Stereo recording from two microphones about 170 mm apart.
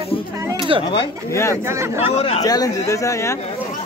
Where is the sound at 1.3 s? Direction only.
15° left (ahead or behind).